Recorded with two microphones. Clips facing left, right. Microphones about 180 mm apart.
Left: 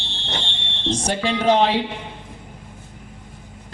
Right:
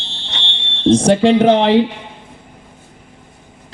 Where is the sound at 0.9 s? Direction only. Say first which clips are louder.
Right 12 dB; 55° right (ahead or behind).